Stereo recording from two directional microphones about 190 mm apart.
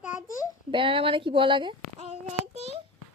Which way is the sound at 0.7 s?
30° right (ahead or behind).